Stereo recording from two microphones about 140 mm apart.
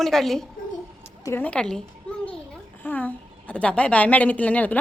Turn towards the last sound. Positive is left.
turn(degrees=10)  # may be behind; listen again after turning